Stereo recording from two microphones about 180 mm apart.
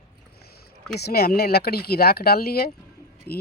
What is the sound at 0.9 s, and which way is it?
Speech, 60° left (ahead or behind).